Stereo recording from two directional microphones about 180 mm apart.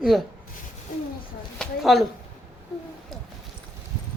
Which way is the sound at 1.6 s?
Centre (ahead or behind).